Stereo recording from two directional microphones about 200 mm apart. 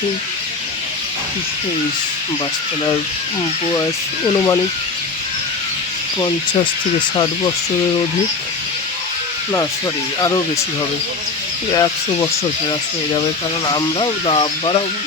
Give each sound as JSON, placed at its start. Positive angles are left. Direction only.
{"t": 10.2, "sound": "speech", "side_deg": 20}
{"t": 11.7, "sound": "speech", "side_deg": 20}
{"t": 13.7, "sound": "speech", "side_deg": 25}